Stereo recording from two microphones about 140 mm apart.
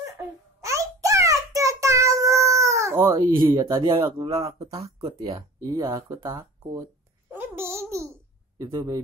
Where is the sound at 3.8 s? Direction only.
40° right (ahead or behind).